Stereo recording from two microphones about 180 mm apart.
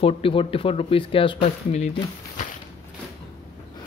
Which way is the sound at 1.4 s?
40° left (ahead or behind).